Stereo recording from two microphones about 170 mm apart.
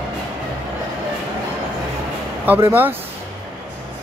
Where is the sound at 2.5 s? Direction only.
10° right (ahead or behind).